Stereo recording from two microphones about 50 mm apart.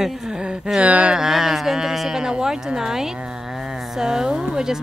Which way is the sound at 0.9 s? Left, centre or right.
Right.